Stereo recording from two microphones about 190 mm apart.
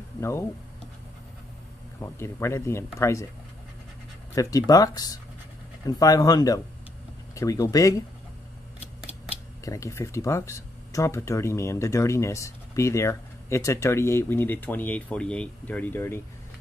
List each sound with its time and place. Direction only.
0.2 s speech: 15° left (ahead or behind)
2.0 s speech: 15° left (ahead or behind)
4.4 s speech: 20° left (ahead or behind)
9.7 s speech: 15° left (ahead or behind)